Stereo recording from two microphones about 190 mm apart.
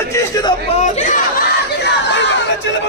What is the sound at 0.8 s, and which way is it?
Speech, 40° left (ahead or behind).